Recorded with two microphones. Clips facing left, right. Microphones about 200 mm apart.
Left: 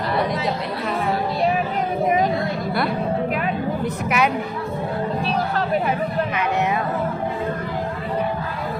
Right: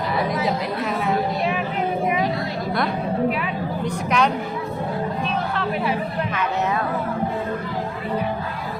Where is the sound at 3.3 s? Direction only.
45° left (ahead or behind).